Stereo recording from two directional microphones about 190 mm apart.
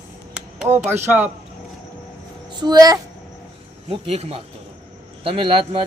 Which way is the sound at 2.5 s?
20° right (ahead or behind).